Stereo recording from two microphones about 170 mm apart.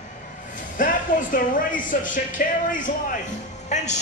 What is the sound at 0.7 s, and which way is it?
A man's voice, 50° left (ahead or behind).